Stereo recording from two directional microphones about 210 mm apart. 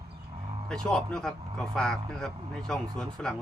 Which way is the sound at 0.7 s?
5° left (ahead or behind).